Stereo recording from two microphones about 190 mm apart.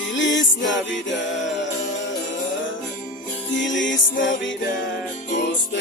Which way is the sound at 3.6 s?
75° left (ahead or behind).